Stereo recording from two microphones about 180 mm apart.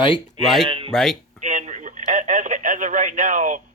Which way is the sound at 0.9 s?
Centre (ahead or behind).